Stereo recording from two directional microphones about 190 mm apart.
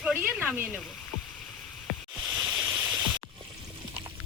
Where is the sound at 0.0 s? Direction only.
5° right (ahead or behind).